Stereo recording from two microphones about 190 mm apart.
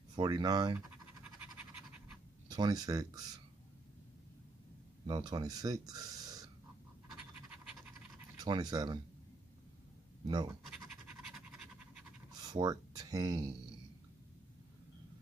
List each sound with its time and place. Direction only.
0.1 s speech: 20° right (ahead or behind)
0.7 s scratch: 5° right (ahead or behind)
2.5 s speech: 20° right (ahead or behind)
5.0 s speech: 20° right (ahead or behind)
7.1 s scratch: 5° right (ahead or behind)
8.4 s speech: 20° right (ahead or behind)
10.2 s speech: 20° right (ahead or behind)
11.3 s scratch: 5° right (ahead or behind)
12.4 s speech: 20° right (ahead or behind)